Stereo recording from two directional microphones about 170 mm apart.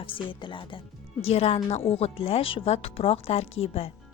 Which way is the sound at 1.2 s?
35° left (ahead or behind).